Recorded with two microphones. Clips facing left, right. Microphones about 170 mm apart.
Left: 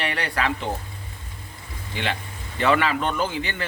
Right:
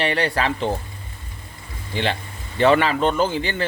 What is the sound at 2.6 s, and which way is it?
Speech, 30° right (ahead or behind).